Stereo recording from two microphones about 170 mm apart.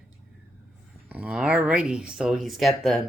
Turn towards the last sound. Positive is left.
turn(degrees=0)  # may be behind; listen again after turning